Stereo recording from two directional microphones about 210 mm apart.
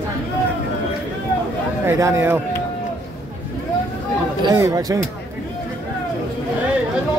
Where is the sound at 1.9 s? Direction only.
15° right (ahead or behind).